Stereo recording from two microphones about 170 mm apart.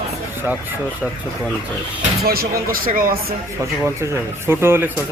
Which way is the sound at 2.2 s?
60° right (ahead or behind).